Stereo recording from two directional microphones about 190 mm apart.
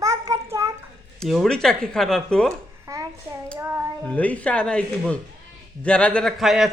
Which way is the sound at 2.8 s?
15° right (ahead or behind).